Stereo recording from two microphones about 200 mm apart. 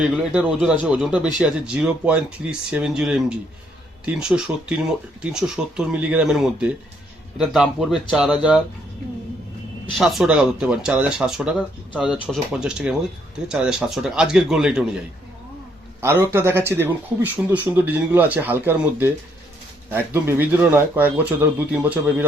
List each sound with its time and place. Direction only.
0.0 s speech: 5° right (ahead or behind)
10.0 s speech: centre (ahead or behind)
16.0 s a man's voice: 10° right (ahead or behind)